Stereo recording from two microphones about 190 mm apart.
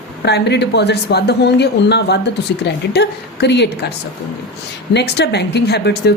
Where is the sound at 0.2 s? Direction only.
60° left (ahead or behind).